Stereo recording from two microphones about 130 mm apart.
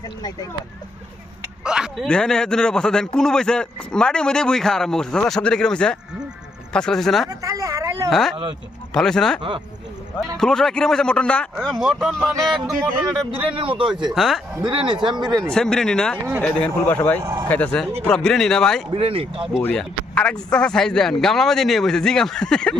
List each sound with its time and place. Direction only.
0.2 s speech: 30° left (ahead or behind)
1.6 s speech: 5° right (ahead or behind)
2.0 s a man's voice: 5° left (ahead or behind)
7.3 s a sound: 25° right (ahead or behind)
8.1 s a man's voice: centre (ahead or behind)
13.6 s speech: 40° right (ahead or behind)
14.1 s a man's voice: centre (ahead or behind)
14.7 s speech: 40° right (ahead or behind)
15.5 s a man's voice: 5° left (ahead or behind)
17.2 s speech: 30° right (ahead or behind)
17.5 s a man's voice: 10° left (ahead or behind)
18.9 s speech: 45° right (ahead or behind)
19.6 s a man's voice: 10° left (ahead or behind)